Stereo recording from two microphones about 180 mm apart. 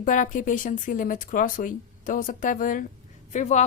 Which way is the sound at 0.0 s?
45° left (ahead or behind).